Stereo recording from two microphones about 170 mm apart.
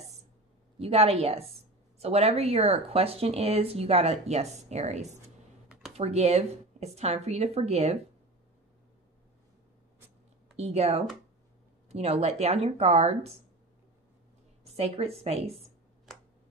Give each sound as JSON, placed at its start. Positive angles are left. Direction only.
{"t": 0.7, "sound": "speech", "side_deg": -35}
{"t": 5.7, "sound": "computer keyboard", "side_deg": -5}
{"t": 5.9, "sound": "speech", "side_deg": -40}
{"t": 10.6, "sound": "speech", "side_deg": -40}
{"t": 14.6, "sound": "a woman's voice", "side_deg": -40}